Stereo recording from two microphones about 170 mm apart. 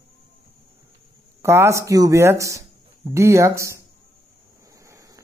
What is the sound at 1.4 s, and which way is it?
Speech, 15° right (ahead or behind).